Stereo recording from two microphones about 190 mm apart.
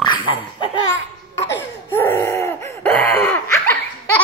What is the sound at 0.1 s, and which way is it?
Laughter, 25° left (ahead or behind).